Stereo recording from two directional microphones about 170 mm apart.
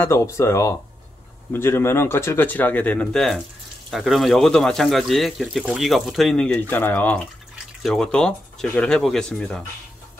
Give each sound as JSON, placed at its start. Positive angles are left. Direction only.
{"t": 0.0, "sound": "speech", "side_deg": 15}